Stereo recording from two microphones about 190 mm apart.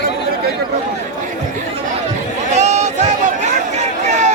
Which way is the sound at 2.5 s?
35° right (ahead or behind).